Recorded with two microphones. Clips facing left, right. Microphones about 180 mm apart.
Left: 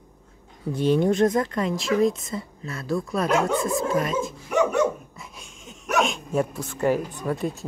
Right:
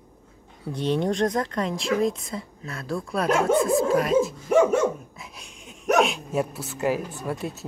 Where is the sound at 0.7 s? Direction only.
5° left (ahead or behind).